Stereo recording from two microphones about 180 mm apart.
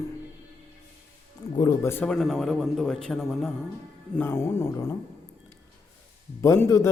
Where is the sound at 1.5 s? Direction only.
20° left (ahead or behind); by 3.5 s centre (ahead or behind).